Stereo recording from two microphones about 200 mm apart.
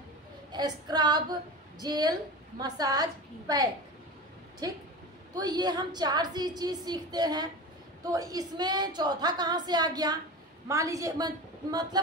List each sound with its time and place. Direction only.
0.5 s a woman's voice: 20° right (ahead or behind)
5.3 s a woman's voice: 20° right (ahead or behind)